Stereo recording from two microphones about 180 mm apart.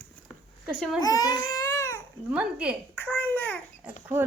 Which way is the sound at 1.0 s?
20° left (ahead or behind).